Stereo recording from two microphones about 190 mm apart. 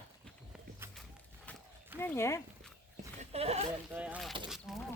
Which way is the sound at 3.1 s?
30° right (ahead or behind).